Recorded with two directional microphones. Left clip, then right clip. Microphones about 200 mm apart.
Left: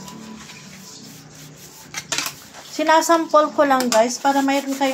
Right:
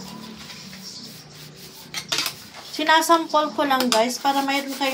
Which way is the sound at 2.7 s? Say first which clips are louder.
Left 2 dB; 40° left (ahead or behind).